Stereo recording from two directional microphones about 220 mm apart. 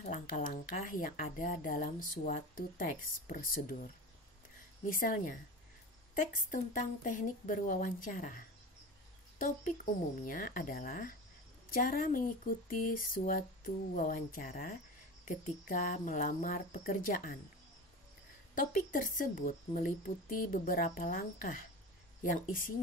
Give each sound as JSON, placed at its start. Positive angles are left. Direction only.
{"t": 0.0, "sound": "speech", "side_deg": 40}
{"t": 10.2, "sound": "speech", "side_deg": 40}
{"t": 18.5, "sound": "speech", "side_deg": 35}